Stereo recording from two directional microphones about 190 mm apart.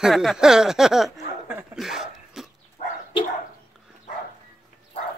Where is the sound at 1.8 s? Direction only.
Centre (ahead or behind).